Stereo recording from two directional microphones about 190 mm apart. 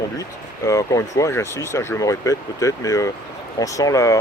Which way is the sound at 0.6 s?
15° left (ahead or behind).